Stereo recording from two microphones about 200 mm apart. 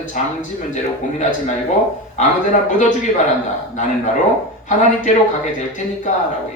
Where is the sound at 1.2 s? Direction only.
40° left (ahead or behind).